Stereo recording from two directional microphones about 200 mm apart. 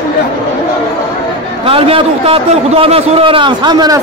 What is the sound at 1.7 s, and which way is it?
A man's voice, 25° right (ahead or behind).